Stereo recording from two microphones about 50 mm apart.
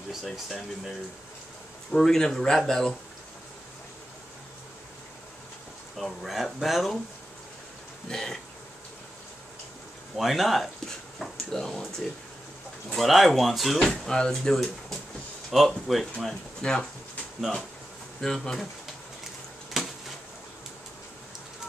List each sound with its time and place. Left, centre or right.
0.1 s speech: centre
5.9 s speech: centre
8.1 s speech: centre
10.1 s speech: centre
12.9 s speech: centre
16.6 s speech: centre
18.2 s speech: centre
19.7 s a sound: centre